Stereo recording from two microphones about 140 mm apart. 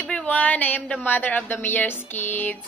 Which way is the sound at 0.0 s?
10° left (ahead or behind).